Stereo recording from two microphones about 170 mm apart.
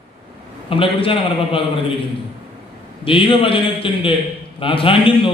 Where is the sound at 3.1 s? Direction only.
30° left (ahead or behind).